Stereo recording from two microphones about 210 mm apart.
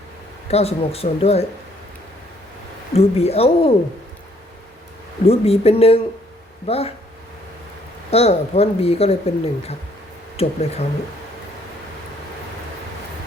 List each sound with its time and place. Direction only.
0.5 s speech: 30° left (ahead or behind)
2.9 s speech: 30° left (ahead or behind)
5.2 s speech: 30° left (ahead or behind)
8.1 s speech: 30° left (ahead or behind)